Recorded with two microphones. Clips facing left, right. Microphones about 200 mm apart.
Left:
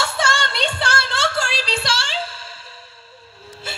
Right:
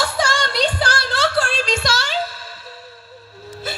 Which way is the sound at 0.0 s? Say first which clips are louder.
Right 2 dB; 25° left (ahead or behind).